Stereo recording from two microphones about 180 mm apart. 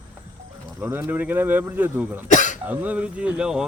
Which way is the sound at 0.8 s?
10° right (ahead or behind).